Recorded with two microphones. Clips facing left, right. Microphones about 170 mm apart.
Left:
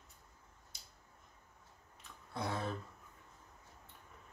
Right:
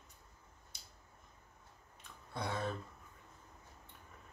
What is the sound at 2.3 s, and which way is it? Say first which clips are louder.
Tick: even; 5° left (ahead or behind).